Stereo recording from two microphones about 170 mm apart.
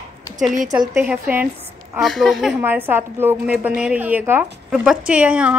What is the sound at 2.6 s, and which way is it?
A woman's voice, 10° right (ahead or behind).